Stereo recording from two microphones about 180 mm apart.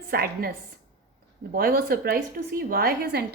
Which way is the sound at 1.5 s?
55° right (ahead or behind).